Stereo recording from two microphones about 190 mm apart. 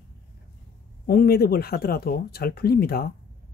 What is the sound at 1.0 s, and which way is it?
Speech, 55° left (ahead or behind).